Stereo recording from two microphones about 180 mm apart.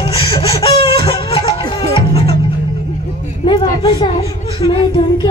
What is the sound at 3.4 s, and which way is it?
A woman's voice, 25° left (ahead or behind).